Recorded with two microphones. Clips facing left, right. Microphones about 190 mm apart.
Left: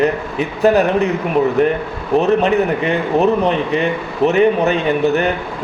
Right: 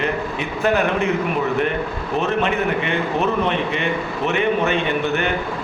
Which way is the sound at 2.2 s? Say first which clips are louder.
Left 6 dB; 35° left (ahead or behind).